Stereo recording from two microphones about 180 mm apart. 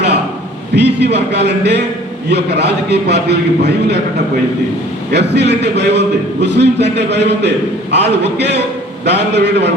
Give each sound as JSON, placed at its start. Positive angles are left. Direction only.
{"t": 0.8, "sound": "a man's voice", "side_deg": -70}
{"t": 5.1, "sound": "a man's voice", "side_deg": -70}